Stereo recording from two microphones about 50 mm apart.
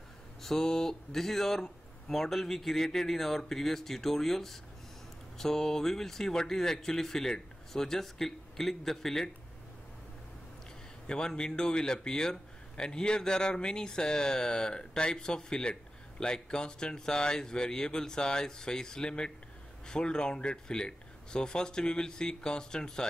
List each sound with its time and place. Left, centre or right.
0.4 s speech: centre
11.1 s speech: centre